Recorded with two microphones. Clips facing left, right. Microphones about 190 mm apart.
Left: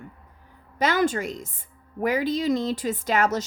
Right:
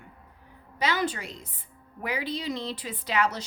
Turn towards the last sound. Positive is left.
turn(degrees=45)  # may be behind; listen again after turning